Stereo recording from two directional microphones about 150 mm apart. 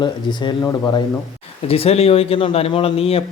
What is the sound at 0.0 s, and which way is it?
Speech, 30° left (ahead or behind).